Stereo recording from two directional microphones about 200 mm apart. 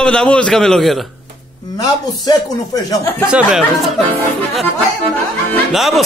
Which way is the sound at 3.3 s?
5° right (ahead or behind).